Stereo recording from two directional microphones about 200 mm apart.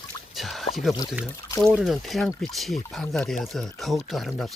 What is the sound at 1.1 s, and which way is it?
Speech, centre (ahead or behind).